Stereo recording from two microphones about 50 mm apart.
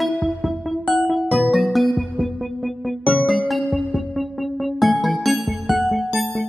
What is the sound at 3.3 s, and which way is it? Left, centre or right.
Music, centre.